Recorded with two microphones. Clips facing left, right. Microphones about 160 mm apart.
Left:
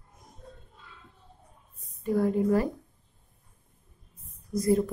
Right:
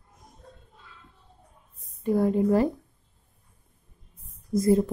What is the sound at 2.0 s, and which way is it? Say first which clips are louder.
Speech: right 2 dB; 25° right (ahead or behind).